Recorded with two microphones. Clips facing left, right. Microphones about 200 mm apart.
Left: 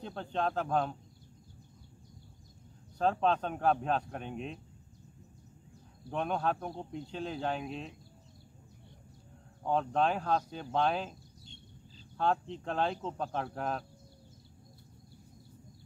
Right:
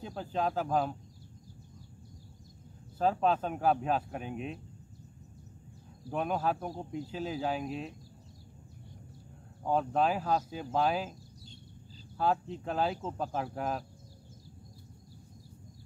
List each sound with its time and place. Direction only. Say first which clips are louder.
0.0 s speech: right 1 dB; 5° right (ahead or behind)
3.0 s speech: right 1 dB; 5° right (ahead or behind)
6.0 s speech: right 1 dB; 5° right (ahead or behind)
9.7 s speech: right 1 dB; 5° right (ahead or behind)
12.2 s speech: right 1 dB; 5° right (ahead or behind)